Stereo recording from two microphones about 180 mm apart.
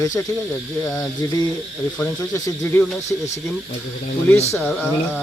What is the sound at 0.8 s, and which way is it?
Speech, 20° left (ahead or behind).